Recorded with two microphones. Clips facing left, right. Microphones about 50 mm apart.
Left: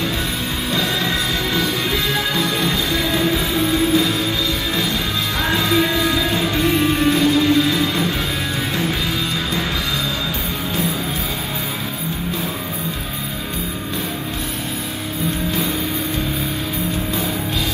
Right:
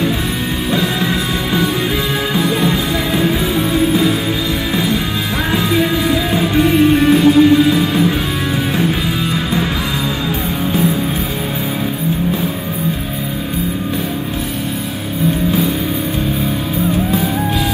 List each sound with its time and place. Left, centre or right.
0.7 s music: centre
5.5 s music: centre